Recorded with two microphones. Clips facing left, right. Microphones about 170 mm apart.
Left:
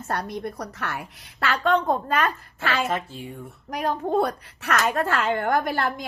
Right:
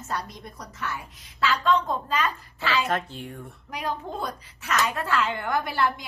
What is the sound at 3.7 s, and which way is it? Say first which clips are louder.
A child's voice: left 7 dB; 50° left (ahead or behind).